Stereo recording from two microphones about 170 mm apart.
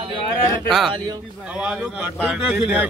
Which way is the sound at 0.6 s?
Centre (ahead or behind).